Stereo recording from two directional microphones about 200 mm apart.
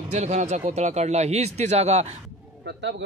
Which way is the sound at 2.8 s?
60° right (ahead or behind).